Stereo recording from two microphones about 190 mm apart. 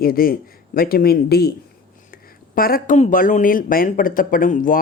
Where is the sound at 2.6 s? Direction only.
50° left (ahead or behind).